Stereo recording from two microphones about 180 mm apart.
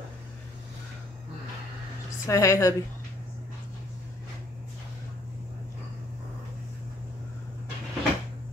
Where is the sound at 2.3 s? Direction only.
15° left (ahead or behind).